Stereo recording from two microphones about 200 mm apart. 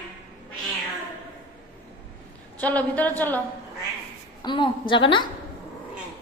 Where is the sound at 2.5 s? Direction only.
10° left (ahead or behind).